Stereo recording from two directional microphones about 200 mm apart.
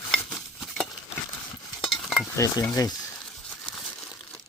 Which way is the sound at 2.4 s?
15° left (ahead or behind).